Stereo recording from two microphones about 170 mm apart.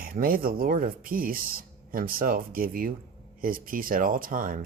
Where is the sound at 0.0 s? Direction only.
60° right (ahead or behind).